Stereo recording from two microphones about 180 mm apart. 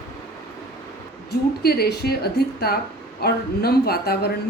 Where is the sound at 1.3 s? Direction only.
60° left (ahead or behind).